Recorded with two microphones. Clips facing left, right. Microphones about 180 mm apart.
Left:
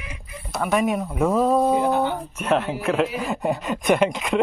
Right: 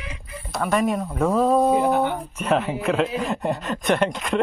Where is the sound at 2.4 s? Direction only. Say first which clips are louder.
Even; centre (ahead or behind).